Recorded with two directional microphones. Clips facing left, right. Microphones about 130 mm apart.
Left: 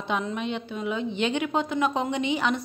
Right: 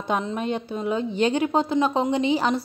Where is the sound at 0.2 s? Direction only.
35° right (ahead or behind).